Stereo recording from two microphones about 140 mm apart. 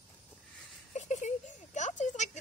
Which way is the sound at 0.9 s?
55° left (ahead or behind).